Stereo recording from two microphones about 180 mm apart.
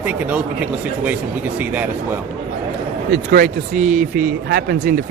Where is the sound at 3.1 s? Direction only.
50° right (ahead or behind).